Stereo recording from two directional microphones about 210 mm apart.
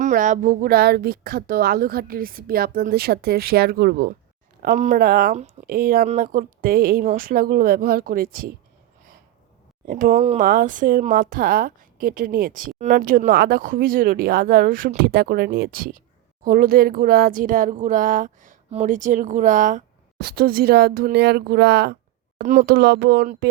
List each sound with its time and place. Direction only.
0.0 s speech: 35° right (ahead or behind)
9.8 s speech: 40° right (ahead or behind)
22.4 s speech: 35° right (ahead or behind)